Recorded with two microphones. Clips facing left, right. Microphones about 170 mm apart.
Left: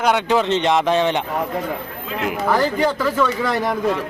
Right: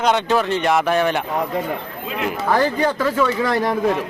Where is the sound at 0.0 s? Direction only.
10° left (ahead or behind).